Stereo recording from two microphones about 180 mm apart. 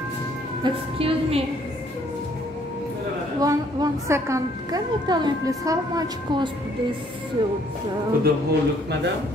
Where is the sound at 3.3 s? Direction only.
20° right (ahead or behind).